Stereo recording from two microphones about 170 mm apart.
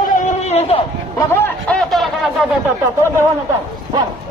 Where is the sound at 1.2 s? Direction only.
15° left (ahead or behind); by 2.7 s centre (ahead or behind).